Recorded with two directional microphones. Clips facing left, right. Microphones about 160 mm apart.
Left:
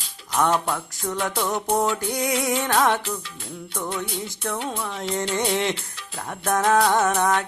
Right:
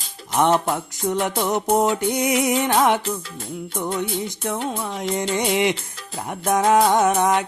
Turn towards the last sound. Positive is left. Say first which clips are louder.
# right 3 dB
turn(degrees=-15)  # may be behind; listen again after turning